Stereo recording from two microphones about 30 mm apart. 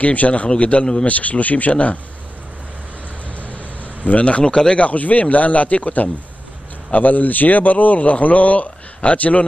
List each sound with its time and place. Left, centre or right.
0.0 s a man's voice: left
3.3 s a sound: left
4.7 s a man's voice: left